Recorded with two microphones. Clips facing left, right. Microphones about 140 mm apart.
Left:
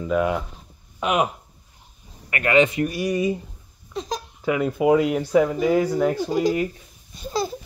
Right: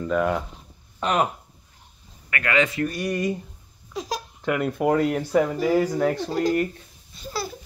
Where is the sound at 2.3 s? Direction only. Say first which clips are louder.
Left 5 dB; 20° left (ahead or behind).